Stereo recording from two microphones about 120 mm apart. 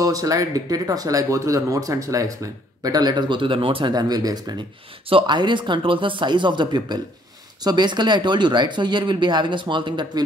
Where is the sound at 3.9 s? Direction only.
35° right (ahead or behind).